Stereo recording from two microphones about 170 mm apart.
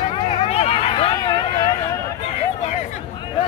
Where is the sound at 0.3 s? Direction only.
35° left (ahead or behind).